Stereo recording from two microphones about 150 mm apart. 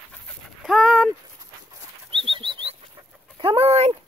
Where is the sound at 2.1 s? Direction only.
35° right (ahead or behind).